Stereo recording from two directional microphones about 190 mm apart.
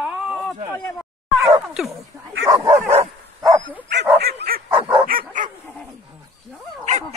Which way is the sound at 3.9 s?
60° right (ahead or behind).